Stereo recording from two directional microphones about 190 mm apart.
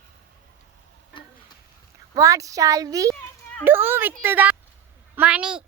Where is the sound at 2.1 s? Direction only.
15° right (ahead or behind).